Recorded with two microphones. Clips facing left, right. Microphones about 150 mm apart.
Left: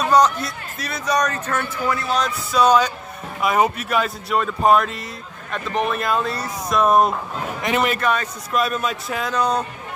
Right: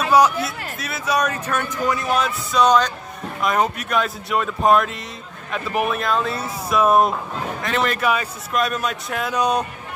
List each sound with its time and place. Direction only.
0.0 s a man's voice: 5° right (ahead or behind)
2.1 s speech: centre (ahead or behind)
7.6 s speech: 10° left (ahead or behind)
8.0 s speech: 5° right (ahead or behind)
9.3 s speech: 10° right (ahead or behind)